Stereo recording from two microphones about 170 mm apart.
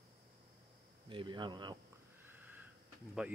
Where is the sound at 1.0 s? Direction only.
30° right (ahead or behind).